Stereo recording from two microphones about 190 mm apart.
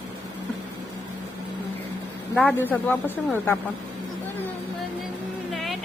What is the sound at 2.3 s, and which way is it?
Speech, 10° left (ahead or behind).